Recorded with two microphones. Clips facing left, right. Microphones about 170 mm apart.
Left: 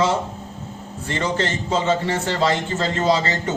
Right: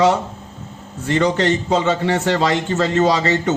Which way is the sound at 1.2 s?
70° right (ahead or behind).